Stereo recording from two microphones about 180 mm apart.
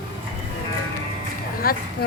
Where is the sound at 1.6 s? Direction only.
55° left (ahead or behind).